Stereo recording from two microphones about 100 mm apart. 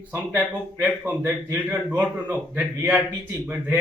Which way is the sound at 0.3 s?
15° right (ahead or behind).